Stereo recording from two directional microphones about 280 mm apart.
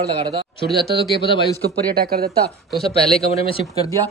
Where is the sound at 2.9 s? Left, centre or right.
Left.